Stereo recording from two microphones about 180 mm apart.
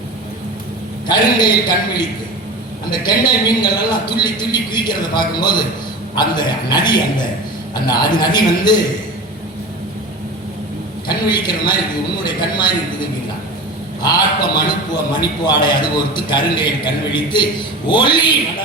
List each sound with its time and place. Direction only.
1.0 s a man's voice: 25° left (ahead or behind)
11.1 s a man's voice: 25° left (ahead or behind)
14.0 s a man's voice: 25° left (ahead or behind)